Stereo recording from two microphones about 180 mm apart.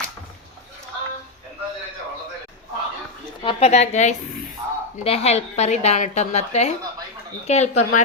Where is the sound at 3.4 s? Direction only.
35° left (ahead or behind).